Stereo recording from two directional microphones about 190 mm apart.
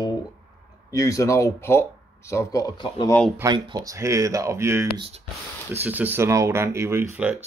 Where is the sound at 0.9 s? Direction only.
15° left (ahead or behind).